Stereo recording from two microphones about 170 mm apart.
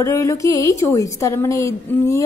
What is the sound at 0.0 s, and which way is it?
A woman's voice, 20° left (ahead or behind).